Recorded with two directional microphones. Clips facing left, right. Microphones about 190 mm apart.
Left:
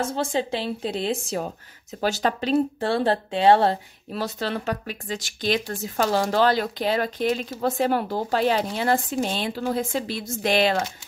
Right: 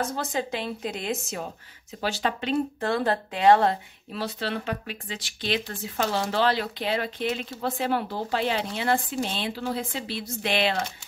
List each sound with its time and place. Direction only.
0.0 s speech: 25° left (ahead or behind)
2.0 s speech: 45° left (ahead or behind)